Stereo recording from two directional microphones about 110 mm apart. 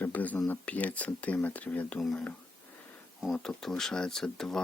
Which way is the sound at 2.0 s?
Centre (ahead or behind).